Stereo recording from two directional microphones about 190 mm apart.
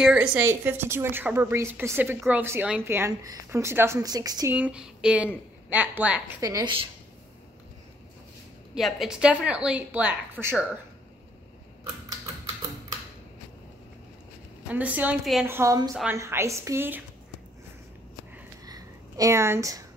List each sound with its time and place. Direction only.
0.0 s a woman's voice: 5° right (ahead or behind)
4.6 s a woman's voice: 5° right (ahead or behind)
6.4 s a woman's voice: 20° right (ahead or behind)
8.7 s a woman's voice: centre (ahead or behind)
14.7 s a woman's voice: 10° right (ahead or behind)
15.9 s a woman's voice: centre (ahead or behind)
16.2 s a woman's voice: 15° right (ahead or behind)
18.7 s a sound: 20° right (ahead or behind)